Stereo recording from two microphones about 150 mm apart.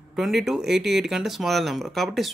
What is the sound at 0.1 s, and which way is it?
Speech, centre (ahead or behind).